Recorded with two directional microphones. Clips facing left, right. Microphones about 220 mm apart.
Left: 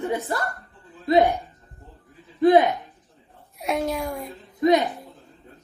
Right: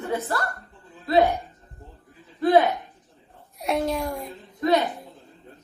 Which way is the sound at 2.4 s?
20° left (ahead or behind).